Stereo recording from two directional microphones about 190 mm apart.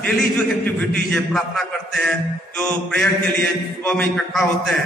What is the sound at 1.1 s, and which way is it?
A man's voice, centre (ahead or behind).